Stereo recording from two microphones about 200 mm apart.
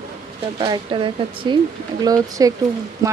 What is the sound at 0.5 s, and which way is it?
Speech, 25° right (ahead or behind).